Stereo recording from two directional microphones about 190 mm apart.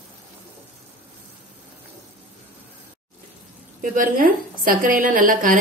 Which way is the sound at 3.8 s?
45° right (ahead or behind).